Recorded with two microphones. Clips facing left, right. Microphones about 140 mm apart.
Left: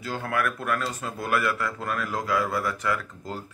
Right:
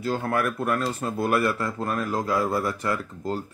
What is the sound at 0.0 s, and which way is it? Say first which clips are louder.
Speech: right 3 dB; 35° right (ahead or behind).